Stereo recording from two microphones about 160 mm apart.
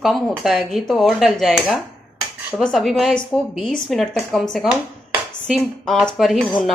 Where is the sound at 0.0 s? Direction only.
Centre (ahead or behind).